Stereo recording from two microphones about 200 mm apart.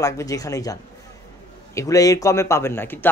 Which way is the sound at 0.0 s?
15° left (ahead or behind).